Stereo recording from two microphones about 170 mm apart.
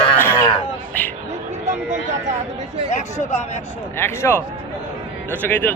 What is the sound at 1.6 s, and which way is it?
Speech, 45° right (ahead or behind).